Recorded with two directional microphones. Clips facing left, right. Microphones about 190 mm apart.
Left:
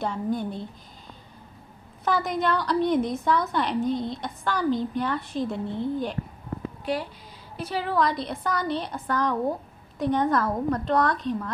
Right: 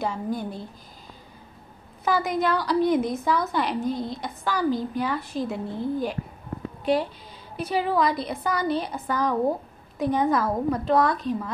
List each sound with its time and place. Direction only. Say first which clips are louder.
0.0 s a woman's voice: left 1 dB; 5° right (ahead or behind)
2.0 s a woman's voice: right 1 dB; 5° right (ahead or behind)
6.8 s a woman's voice: right 7 dB; 25° right (ahead or behind); by 11.5 s 5° right (ahead or behind)